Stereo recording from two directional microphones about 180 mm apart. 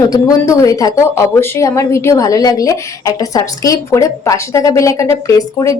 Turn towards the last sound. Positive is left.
turn(degrees=20)  # may be behind; listen again after turning